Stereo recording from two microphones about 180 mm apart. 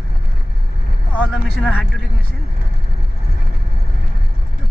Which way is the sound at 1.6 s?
Centre (ahead or behind).